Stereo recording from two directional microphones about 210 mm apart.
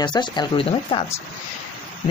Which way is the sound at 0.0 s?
20° left (ahead or behind).